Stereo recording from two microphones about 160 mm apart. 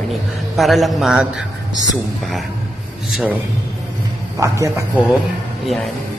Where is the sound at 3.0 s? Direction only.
Centre (ahead or behind).